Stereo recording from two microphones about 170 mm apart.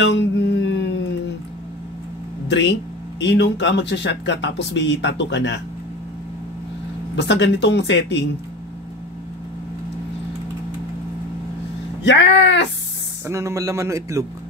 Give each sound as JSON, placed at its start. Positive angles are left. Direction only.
{"t": 0.0, "sound": "a sound", "side_deg": 90}
{"t": 2.4, "sound": "speech", "side_deg": 85}
{"t": 7.2, "sound": "speech", "side_deg": 90}
{"t": 12.0, "sound": "speech", "side_deg": 90}
{"t": 13.3, "sound": "a man's voice", "side_deg": -15}